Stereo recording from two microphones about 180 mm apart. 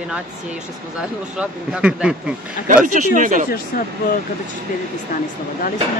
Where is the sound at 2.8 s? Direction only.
45° right (ahead or behind).